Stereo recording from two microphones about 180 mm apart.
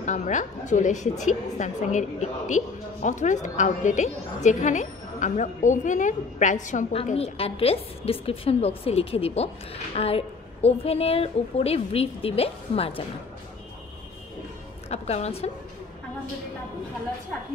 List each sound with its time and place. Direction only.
0.0 s a woman's voice: 45° left (ahead or behind)
14.9 s a woman's voice: 35° left (ahead or behind)